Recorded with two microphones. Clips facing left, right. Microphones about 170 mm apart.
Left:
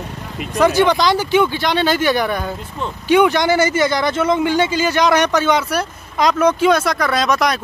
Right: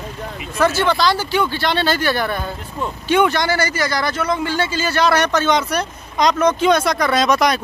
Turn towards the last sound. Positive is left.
turn(degrees=0)  # may be behind; listen again after turning